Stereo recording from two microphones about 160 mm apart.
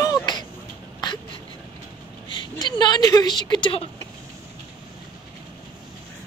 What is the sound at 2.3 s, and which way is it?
A woman's voice, 25° left (ahead or behind).